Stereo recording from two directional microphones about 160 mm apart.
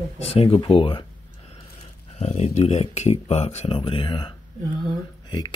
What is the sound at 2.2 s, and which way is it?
Speech, 45° left (ahead or behind).